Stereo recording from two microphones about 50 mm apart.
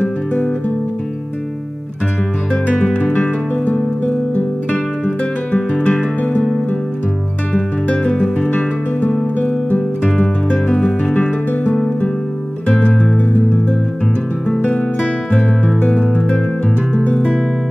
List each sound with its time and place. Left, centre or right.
2.9 s music: left
5.0 s music: left
7.5 s music: left
8.1 s music: centre
10.0 s music: centre
14.6 s music: left
17.1 s music: centre